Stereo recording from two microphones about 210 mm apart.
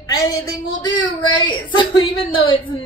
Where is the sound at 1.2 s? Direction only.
20° left (ahead or behind).